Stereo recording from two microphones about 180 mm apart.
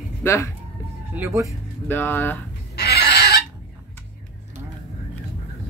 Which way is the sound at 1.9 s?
10° left (ahead or behind).